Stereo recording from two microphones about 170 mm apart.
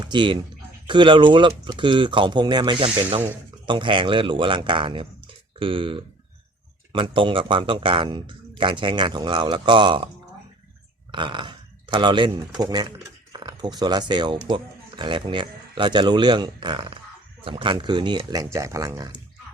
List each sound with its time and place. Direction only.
0.0 s speech: 25° right (ahead or behind)
11.1 s speech: 25° right (ahead or behind)